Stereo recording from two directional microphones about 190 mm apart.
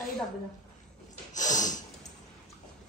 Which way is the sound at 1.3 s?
40° left (ahead or behind).